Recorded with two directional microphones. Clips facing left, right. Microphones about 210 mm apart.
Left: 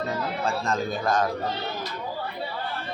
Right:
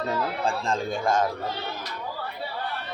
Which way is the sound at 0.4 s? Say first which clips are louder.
Left 3 dB; 30° right (ahead or behind).